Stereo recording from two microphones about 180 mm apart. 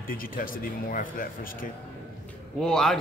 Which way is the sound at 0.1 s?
50° left (ahead or behind).